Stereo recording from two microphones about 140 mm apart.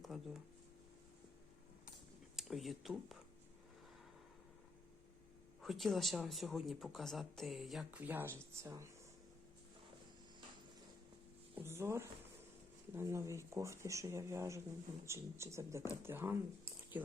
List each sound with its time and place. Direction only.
0.1 s speech: 5° right (ahead or behind)
2.3 s speech: centre (ahead or behind)
5.6 s speech: centre (ahead or behind)
7.9 s speech: 10° right (ahead or behind)
11.5 s speech: 15° right (ahead or behind)